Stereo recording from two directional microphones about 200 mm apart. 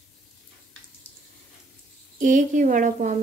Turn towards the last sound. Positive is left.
turn(degrees=-40)  # may be behind; listen again after turning